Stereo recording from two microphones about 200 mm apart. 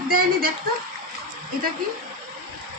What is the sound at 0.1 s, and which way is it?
Speech, 45° right (ahead or behind).